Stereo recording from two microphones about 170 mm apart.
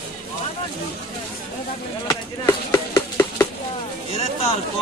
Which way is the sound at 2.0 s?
20° left (ahead or behind).